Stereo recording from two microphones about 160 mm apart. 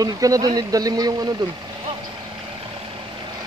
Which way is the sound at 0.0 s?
20° right (ahead or behind).